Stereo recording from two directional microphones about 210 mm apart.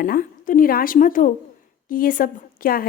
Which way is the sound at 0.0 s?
40° left (ahead or behind).